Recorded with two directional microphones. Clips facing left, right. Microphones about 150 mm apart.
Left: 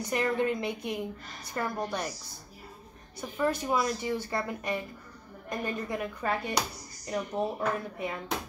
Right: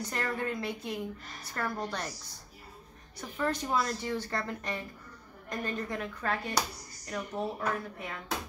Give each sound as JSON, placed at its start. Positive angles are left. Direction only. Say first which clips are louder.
{"t": 0.1, "sound": "a woman's voice", "louder": "left 7 dB", "side_deg": 15}
{"t": 3.2, "sound": "a woman's voice", "louder": "left 3 dB", "side_deg": 10}